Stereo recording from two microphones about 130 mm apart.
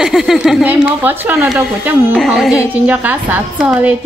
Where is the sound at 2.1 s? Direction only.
Centre (ahead or behind).